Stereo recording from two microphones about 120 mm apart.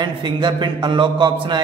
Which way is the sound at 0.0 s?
40° right (ahead or behind).